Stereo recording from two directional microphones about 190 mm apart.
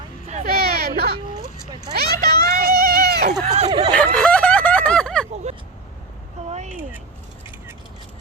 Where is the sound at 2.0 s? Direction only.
55° right (ahead or behind).